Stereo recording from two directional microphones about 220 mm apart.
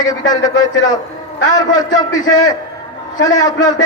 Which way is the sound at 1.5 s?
20° left (ahead or behind).